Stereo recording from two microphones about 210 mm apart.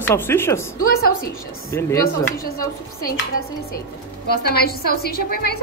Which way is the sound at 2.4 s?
45° left (ahead or behind).